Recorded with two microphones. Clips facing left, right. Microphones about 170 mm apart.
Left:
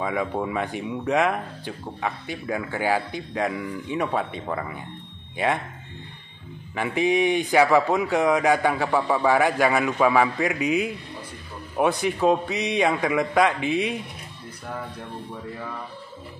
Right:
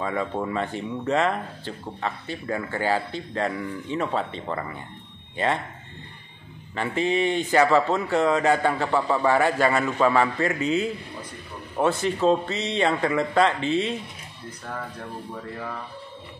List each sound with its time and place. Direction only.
0.0 s speech: 10° left (ahead or behind)
6.7 s speech: 10° left (ahead or behind)